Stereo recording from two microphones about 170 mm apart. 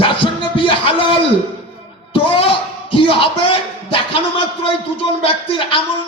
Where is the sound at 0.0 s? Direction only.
30° left (ahead or behind).